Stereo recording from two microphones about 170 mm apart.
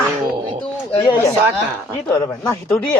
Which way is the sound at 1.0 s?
15° left (ahead or behind).